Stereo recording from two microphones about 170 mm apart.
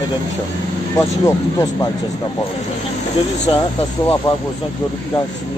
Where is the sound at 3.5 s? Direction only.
30° left (ahead or behind).